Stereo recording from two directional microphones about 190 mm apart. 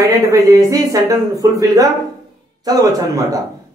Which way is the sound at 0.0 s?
20° right (ahead or behind).